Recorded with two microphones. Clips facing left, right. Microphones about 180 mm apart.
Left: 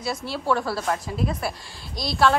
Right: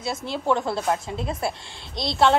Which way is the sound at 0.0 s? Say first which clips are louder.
Right 1 dB; 20° right (ahead or behind).